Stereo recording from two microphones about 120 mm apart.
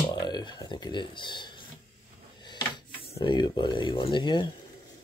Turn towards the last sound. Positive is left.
turn(degrees=40)  # may be behind; listen again after turning